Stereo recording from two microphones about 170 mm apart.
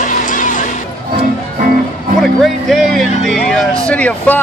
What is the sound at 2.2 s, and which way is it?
Speech, centre (ahead or behind).